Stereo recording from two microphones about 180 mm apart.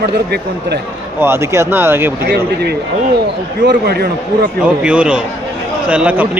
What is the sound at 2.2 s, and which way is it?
Speech, 65° right (ahead or behind).